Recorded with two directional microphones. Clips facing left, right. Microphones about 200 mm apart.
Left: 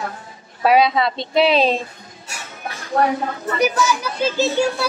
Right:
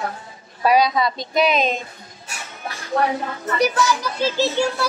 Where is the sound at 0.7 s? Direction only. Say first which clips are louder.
Left 2 dB; 25° left (ahead or behind).